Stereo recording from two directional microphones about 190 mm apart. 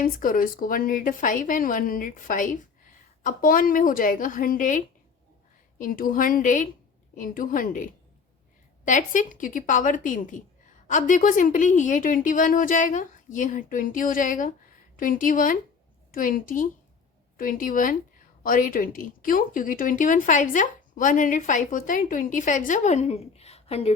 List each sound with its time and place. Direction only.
0.0 s speech: 45° left (ahead or behind)
5.8 s speech: 45° left (ahead or behind)